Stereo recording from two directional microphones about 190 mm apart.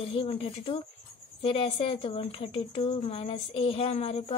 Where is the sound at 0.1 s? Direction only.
30° left (ahead or behind).